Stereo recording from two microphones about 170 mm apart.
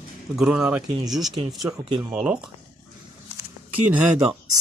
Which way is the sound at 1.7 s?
20° right (ahead or behind).